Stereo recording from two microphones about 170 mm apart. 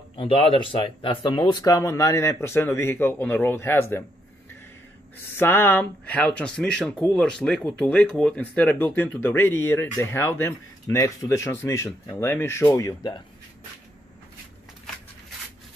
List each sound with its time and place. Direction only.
0.1 s speech: 30° left (ahead or behind); by 4.0 s 15° left (ahead or behind)
5.4 s speech: 10° left (ahead or behind)